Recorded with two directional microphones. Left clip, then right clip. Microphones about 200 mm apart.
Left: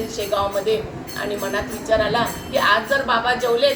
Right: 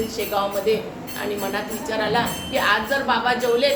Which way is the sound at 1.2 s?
20° right (ahead or behind).